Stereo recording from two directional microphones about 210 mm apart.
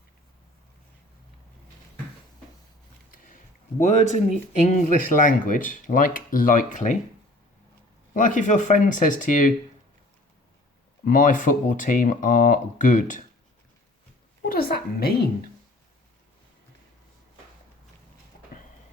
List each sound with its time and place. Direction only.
3.8 s speech: 35° left (ahead or behind)
8.1 s speech: 35° left (ahead or behind)
11.0 s speech: 40° left (ahead or behind)
14.4 s a woman's voice: 45° left (ahead or behind)